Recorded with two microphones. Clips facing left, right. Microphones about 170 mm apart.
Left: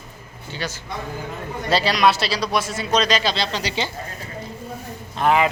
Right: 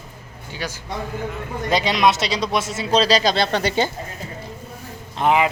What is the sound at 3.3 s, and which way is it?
Speech, 55° right (ahead or behind).